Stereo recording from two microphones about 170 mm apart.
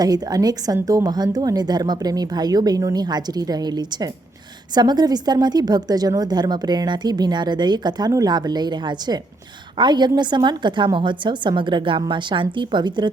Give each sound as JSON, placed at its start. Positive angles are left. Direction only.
{"t": 0.0, "sound": "a woman's voice", "side_deg": -20}